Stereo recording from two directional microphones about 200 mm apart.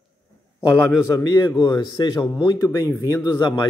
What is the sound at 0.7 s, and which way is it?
A man's voice, 10° left (ahead or behind).